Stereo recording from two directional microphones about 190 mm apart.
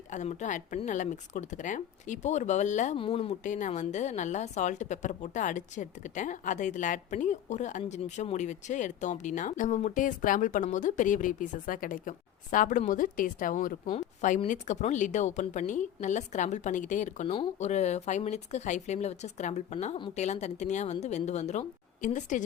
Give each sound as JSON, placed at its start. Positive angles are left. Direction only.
{"t": 0.1, "sound": "a woman's voice", "side_deg": 40}